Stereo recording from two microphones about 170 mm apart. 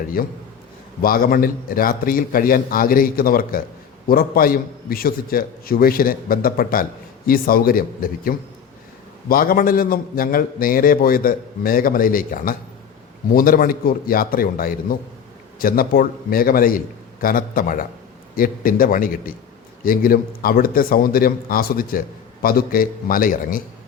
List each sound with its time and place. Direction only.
0.2 s speech: 60° left (ahead or behind)